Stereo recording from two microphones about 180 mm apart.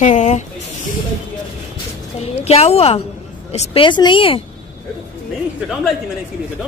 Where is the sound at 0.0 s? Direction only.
40° left (ahead or behind).